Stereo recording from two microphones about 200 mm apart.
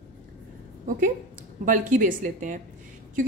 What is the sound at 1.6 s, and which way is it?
Speech, 40° right (ahead or behind).